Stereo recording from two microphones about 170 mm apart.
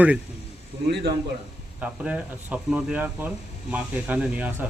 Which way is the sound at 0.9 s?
70° right (ahead or behind).